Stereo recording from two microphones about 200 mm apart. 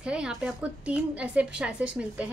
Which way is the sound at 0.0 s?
5° right (ahead or behind).